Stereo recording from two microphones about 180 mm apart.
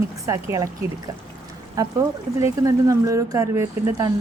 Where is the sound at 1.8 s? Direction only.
20° right (ahead or behind).